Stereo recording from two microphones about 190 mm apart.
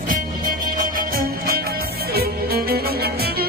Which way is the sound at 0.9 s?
50° right (ahead or behind).